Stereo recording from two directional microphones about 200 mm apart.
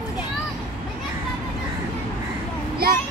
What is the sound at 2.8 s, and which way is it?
Child singing, 50° right (ahead or behind).